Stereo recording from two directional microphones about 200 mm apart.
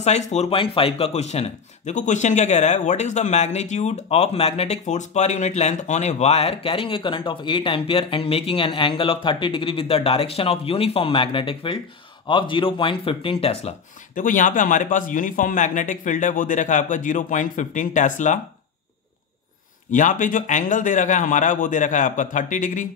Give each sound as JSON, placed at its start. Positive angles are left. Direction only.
{"t": 0.0, "sound": "a man's voice", "side_deg": 35}
{"t": 19.9, "sound": "a man's voice", "side_deg": 40}